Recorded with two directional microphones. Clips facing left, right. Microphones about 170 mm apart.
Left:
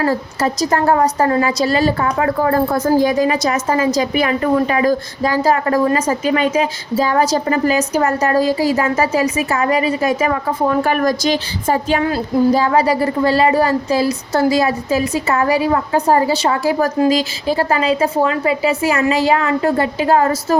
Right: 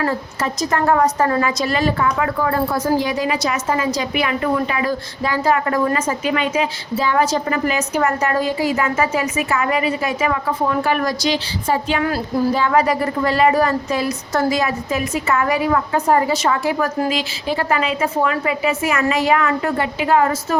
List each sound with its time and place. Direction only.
0.0 s a woman's voice: 35° left (ahead or behind)